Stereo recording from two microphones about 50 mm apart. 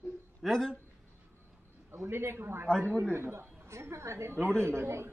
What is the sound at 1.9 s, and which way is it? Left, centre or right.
Speech, right.